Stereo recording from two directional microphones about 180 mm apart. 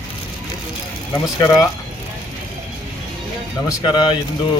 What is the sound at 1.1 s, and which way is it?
Speech, 15° left (ahead or behind).